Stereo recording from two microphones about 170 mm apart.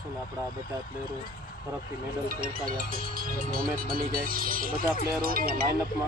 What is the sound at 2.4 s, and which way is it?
Speech, 55° right (ahead or behind).